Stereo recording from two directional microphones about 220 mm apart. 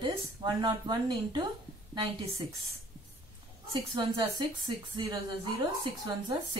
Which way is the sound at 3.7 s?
20° right (ahead or behind).